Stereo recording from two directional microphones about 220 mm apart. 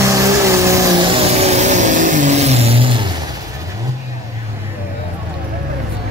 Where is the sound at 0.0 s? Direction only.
15° right (ahead or behind).